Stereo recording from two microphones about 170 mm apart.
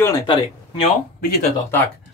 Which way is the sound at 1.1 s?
65° left (ahead or behind).